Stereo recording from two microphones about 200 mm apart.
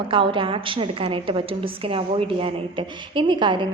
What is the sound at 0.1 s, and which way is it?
A woman's voice, 25° right (ahead or behind).